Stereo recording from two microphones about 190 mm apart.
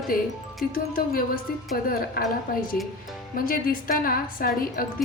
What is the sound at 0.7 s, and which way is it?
A woman's voice, 50° left (ahead or behind).